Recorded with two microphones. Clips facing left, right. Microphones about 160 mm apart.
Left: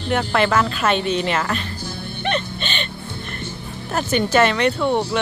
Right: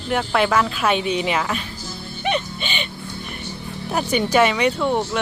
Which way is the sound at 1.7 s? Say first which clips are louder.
Left 3 dB; 60° left (ahead or behind).